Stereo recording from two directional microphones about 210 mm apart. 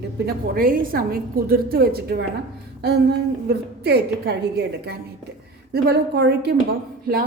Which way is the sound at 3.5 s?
50° right (ahead or behind).